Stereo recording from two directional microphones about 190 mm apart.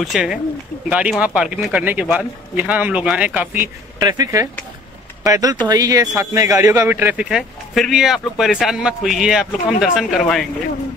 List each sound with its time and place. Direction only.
0.0 s a man's voice: centre (ahead or behind)